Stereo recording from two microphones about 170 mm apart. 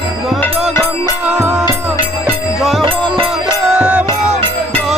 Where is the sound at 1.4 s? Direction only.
10° right (ahead or behind).